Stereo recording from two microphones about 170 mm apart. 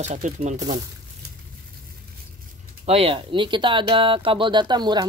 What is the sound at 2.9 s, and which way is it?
Speech, 35° right (ahead or behind).